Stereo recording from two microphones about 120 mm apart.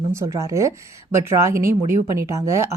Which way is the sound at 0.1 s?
25° right (ahead or behind).